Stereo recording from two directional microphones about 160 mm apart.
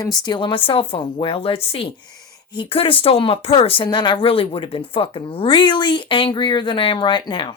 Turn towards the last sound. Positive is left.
turn(degrees=30)  # may be behind; listen again after turning